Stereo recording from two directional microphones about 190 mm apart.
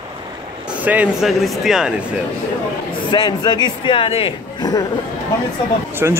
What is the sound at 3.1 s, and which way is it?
Speech, 20° left (ahead or behind).